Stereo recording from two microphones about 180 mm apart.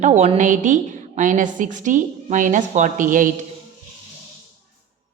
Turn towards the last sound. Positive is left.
turn(degrees=-50)  # may be behind; listen again after turning